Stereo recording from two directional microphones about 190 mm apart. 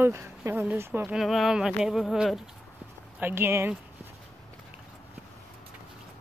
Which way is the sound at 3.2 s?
10° right (ahead or behind).